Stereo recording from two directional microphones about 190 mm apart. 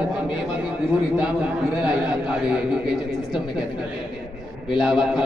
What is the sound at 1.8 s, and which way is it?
A man's voice, 5° right (ahead or behind).